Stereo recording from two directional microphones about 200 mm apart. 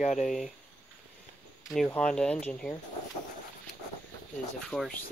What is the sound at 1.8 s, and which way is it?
Speech, 5° left (ahead or behind).